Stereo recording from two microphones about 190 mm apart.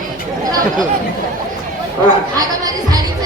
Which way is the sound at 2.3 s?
20° right (ahead or behind).